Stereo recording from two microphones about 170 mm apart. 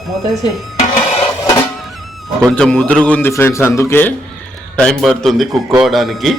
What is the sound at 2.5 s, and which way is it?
A man's voice, 5° left (ahead or behind).